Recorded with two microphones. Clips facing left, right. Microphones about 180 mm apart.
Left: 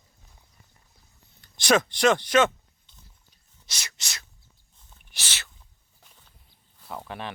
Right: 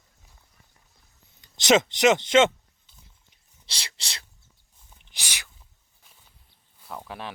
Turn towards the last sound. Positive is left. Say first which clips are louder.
# left 1 dB
turn(degrees=0)  # may be behind; listen again after turning